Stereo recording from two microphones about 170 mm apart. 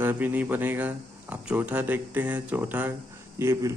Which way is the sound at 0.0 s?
10° right (ahead or behind).